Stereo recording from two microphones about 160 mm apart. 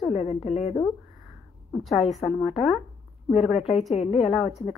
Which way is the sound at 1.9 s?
Centre (ahead or behind).